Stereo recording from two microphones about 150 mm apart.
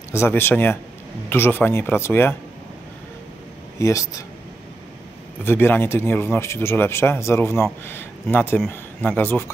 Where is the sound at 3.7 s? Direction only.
20° left (ahead or behind).